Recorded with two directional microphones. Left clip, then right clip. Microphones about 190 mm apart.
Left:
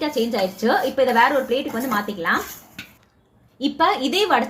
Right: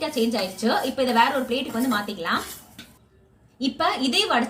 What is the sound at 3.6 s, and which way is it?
Speech, 40° left (ahead or behind).